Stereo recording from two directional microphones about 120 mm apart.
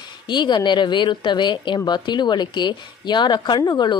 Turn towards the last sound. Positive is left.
turn(degrees=35)  # may be behind; listen again after turning